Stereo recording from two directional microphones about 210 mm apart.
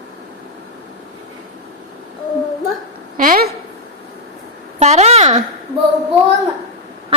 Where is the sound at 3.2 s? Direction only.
45° right (ahead or behind).